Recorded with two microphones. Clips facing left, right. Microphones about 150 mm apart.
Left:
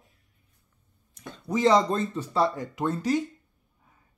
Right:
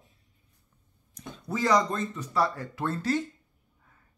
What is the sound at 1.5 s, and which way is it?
Speech, 25° left (ahead or behind).